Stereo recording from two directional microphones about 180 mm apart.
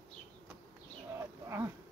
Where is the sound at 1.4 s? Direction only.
15° right (ahead or behind).